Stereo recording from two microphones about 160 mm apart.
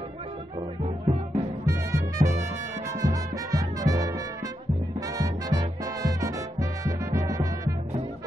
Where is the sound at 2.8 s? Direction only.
20° right (ahead or behind).